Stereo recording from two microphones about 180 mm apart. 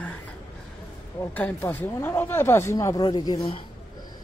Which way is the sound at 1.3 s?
10° left (ahead or behind).